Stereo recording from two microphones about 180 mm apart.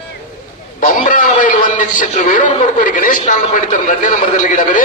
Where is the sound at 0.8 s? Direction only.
45° left (ahead or behind).